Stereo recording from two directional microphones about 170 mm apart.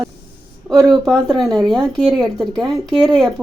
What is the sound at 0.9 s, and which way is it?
Speech, centre (ahead or behind).